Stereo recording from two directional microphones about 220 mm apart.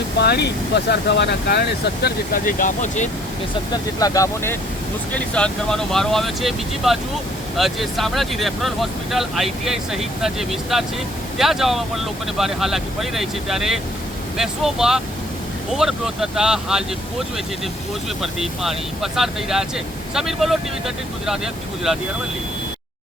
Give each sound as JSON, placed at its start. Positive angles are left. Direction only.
{"t": 0.2, "sound": "speech", "side_deg": 50}
{"t": 3.7, "sound": "speech", "side_deg": 15}
{"t": 5.1, "sound": "speech", "side_deg": 5}
{"t": 18.2, "sound": "speech", "side_deg": 0}